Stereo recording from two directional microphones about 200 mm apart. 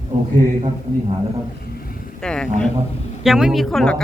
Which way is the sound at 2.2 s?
5° left (ahead or behind).